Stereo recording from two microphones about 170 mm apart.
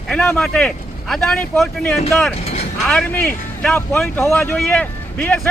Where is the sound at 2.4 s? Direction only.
40° left (ahead or behind).